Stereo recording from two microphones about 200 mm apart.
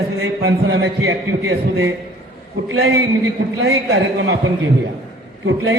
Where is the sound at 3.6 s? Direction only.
75° right (ahead or behind).